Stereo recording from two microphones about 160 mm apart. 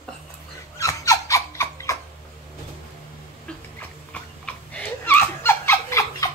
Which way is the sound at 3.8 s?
10° left (ahead or behind).